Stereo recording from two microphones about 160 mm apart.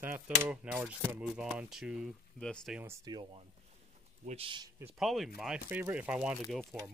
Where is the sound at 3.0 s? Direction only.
25° right (ahead or behind).